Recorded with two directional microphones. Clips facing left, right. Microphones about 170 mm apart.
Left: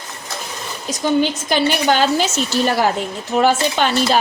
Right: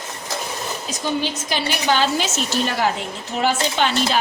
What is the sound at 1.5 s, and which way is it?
A woman's voice, 50° left (ahead or behind).